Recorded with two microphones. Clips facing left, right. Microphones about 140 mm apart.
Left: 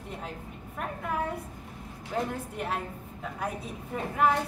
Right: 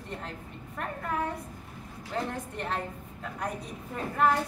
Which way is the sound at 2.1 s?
5° left (ahead or behind).